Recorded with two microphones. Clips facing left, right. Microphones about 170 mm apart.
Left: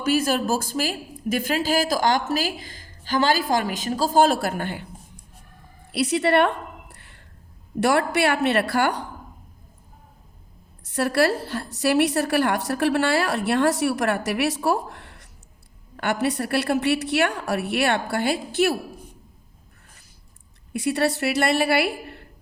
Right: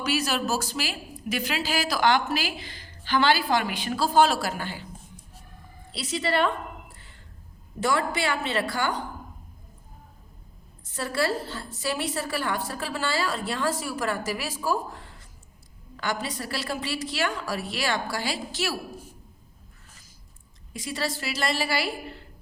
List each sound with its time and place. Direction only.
0.0 s a woman's voice: 50° left (ahead or behind)
5.9 s a sound: 65° left (ahead or behind)
7.8 s a woman's voice: 70° left (ahead or behind)
10.8 s a woman's voice: 70° left (ahead or behind)
20.7 s a woman's voice: 65° left (ahead or behind)